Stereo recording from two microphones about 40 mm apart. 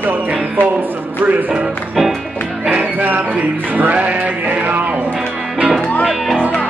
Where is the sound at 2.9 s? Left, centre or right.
Right.